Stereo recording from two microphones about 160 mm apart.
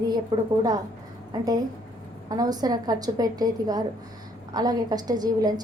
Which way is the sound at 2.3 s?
25° right (ahead or behind).